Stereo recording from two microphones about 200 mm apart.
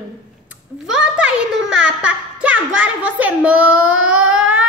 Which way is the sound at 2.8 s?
10° right (ahead or behind).